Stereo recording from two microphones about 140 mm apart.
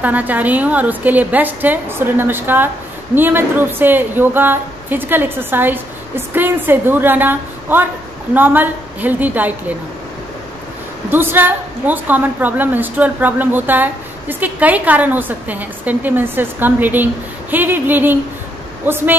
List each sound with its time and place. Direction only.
0.0 s a woman's voice: 10° right (ahead or behind)
11.1 s a woman's voice: 15° right (ahead or behind)